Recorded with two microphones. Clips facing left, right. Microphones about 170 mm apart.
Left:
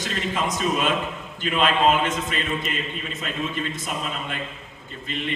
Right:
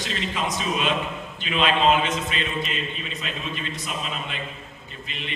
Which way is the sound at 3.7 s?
50° left (ahead or behind).